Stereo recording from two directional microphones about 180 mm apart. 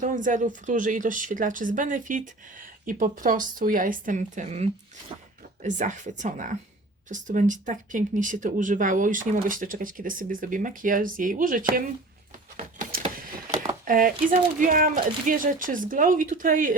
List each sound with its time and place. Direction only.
0.0 s speech: 45° right (ahead or behind)
12.5 s a sound: 45° right (ahead or behind)
13.8 s speech: 50° right (ahead or behind)